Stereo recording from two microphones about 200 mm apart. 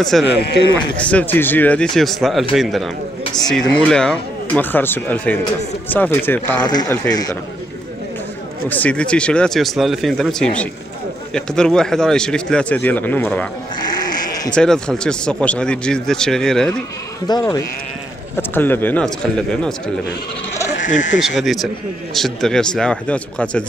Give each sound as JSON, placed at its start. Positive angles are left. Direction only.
{"t": 0.1, "sound": "speech", "side_deg": 0}
{"t": 6.6, "sound": "speech", "side_deg": 20}
{"t": 8.6, "sound": "speech", "side_deg": 10}
{"t": 13.7, "sound": "sheep", "side_deg": 20}
{"t": 14.5, "sound": "speech", "side_deg": 5}
{"t": 17.3, "sound": "speech", "side_deg": 20}
{"t": 20.8, "sound": "speech", "side_deg": 40}
{"t": 21.2, "sound": "speech", "side_deg": 0}